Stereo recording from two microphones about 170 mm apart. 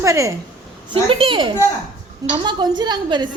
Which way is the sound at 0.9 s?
35° right (ahead or behind).